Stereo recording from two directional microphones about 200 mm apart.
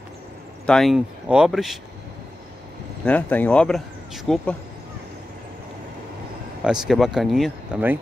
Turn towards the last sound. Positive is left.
turn(degrees=-5)  # may be behind; listen again after turning